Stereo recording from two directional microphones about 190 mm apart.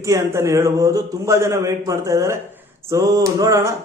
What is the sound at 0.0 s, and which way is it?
A man's voice, 15° right (ahead or behind).